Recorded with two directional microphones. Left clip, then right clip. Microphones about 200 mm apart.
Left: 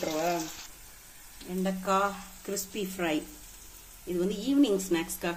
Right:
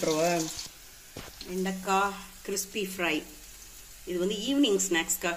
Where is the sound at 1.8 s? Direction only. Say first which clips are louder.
Even; 45° left (ahead or behind).